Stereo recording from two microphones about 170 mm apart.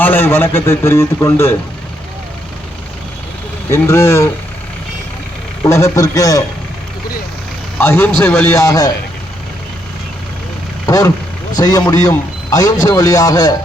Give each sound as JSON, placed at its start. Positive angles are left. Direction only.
{"t": 0.0, "sound": "a man's voice", "side_deg": 10}
{"t": 3.7, "sound": "a man's voice", "side_deg": 15}
{"t": 5.6, "sound": "a man's voice", "side_deg": 15}
{"t": 7.8, "sound": "a man's voice", "side_deg": 15}
{"t": 10.8, "sound": "a man's voice", "side_deg": 20}